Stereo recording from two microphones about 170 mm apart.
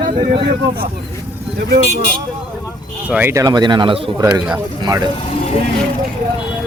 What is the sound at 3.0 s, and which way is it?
Speech, 10° right (ahead or behind).